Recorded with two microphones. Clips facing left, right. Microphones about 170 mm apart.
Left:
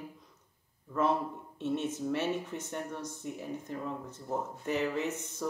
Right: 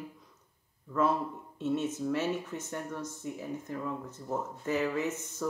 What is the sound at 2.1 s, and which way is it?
Speech, 20° left (ahead or behind).